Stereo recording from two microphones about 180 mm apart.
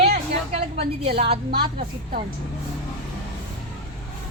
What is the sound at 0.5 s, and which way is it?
Speech, 35° right (ahead or behind).